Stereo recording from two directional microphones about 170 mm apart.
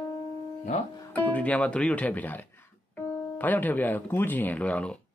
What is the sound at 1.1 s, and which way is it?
Speech, 10° left (ahead or behind).